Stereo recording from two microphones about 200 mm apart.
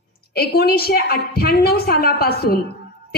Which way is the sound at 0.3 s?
50° left (ahead or behind).